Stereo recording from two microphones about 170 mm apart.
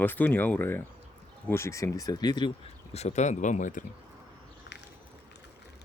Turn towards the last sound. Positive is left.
turn(degrees=50)  # may be behind; listen again after turning